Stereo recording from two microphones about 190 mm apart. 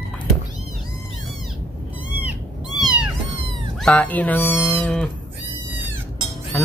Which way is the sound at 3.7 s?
5° left (ahead or behind).